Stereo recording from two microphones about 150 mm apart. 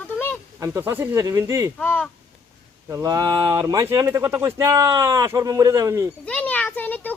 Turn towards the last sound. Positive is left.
turn(degrees=10)  # may be behind; listen again after turning